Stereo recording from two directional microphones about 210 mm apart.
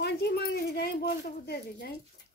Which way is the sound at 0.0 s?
50° left (ahead or behind).